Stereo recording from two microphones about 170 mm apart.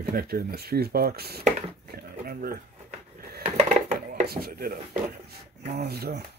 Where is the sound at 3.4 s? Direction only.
40° right (ahead or behind).